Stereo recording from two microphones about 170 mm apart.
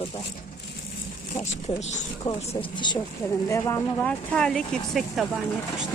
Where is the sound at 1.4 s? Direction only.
40° left (ahead or behind); by 4.0 s 20° left (ahead or behind).